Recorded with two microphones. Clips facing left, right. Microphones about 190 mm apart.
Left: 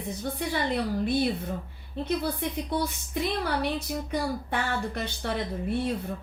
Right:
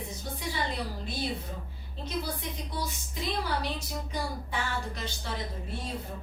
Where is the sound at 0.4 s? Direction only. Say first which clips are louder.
Left 6 dB; 60° left (ahead or behind).